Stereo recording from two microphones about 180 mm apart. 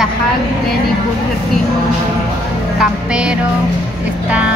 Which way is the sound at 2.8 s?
5° right (ahead or behind).